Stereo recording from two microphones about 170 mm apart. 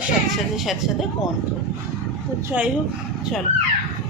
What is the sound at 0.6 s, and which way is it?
Speech, centre (ahead or behind).